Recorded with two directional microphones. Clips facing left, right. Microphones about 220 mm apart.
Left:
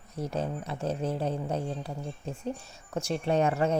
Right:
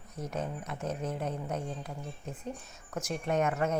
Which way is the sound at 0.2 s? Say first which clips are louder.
Left 4 dB; 30° left (ahead or behind).